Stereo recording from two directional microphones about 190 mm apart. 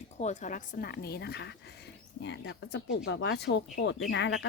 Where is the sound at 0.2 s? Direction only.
40° left (ahead or behind).